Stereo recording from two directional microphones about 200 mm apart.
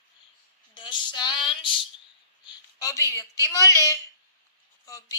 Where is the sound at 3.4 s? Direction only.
15° left (ahead or behind).